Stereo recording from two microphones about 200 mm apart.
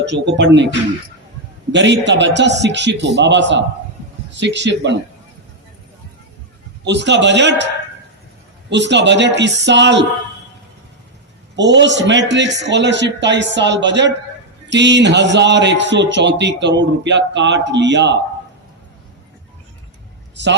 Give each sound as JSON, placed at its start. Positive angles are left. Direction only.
{"t": 0.0, "sound": "a man's voice", "side_deg": -60}
{"t": 1.7, "sound": "a man's voice", "side_deg": -60}
{"t": 6.8, "sound": "a man's voice", "side_deg": -60}
{"t": 8.7, "sound": "a man's voice", "side_deg": -60}
{"t": 11.5, "sound": "a man's voice", "side_deg": -65}